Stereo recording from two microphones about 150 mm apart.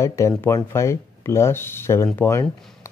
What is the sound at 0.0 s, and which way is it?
Speech, 20° left (ahead or behind).